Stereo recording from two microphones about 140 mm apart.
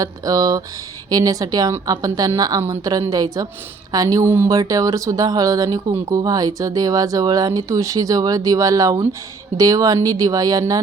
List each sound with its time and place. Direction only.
0.0 s speech: 25° right (ahead or behind)